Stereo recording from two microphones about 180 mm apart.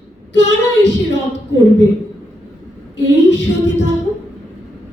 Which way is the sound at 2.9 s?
85° left.